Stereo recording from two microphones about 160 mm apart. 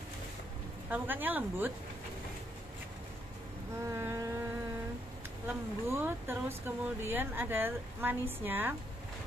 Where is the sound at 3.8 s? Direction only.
15° right (ahead or behind).